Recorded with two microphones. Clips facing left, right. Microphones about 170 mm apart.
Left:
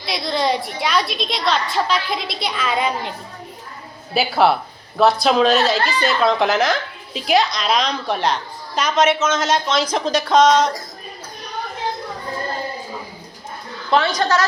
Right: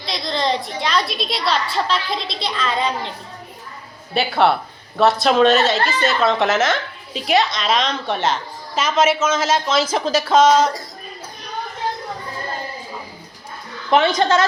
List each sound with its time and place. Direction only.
0.0 s a woman's voice: 5° left (ahead or behind)
4.1 s a woman's voice: centre (ahead or behind)
14.2 s speech: 25° right (ahead or behind)